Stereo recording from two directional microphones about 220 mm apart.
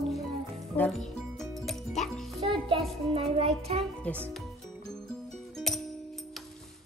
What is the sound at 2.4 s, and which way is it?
Speech, 25° right (ahead or behind).